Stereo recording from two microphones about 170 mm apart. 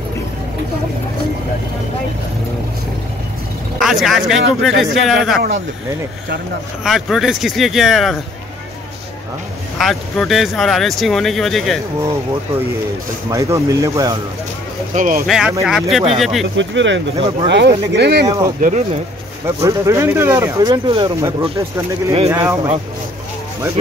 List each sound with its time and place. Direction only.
3.8 s speech: centre (ahead or behind)
6.8 s speech: centre (ahead or behind)
9.8 s speech: centre (ahead or behind)
13.3 s speech: 20° right (ahead or behind)
15.0 s speech: 50° right (ahead or behind)
15.2 s speech: centre (ahead or behind)
16.5 s speech: 90° right
18.2 s speech: 20° right (ahead or behind)
18.6 s speech: 50° right (ahead or behind)
19.4 s speech: 15° right (ahead or behind)